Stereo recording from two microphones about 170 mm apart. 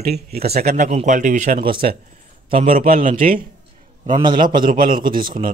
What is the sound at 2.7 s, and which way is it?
Speech, 55° right (ahead or behind).